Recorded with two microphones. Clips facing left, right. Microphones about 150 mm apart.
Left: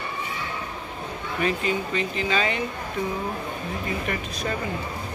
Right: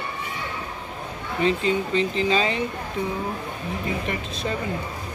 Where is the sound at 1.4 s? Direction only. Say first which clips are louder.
Right 3 dB; 25° right (ahead or behind).